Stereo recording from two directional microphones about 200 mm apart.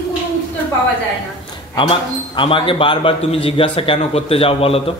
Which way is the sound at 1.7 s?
25° left (ahead or behind).